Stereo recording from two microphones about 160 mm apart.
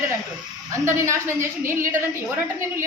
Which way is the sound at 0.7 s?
20° right (ahead or behind).